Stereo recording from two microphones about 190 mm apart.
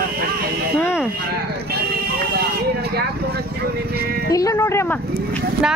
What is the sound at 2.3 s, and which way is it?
Vehicle, 55° right (ahead or behind).